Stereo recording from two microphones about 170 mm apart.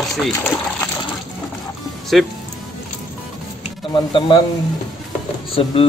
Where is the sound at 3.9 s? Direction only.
30° left (ahead or behind).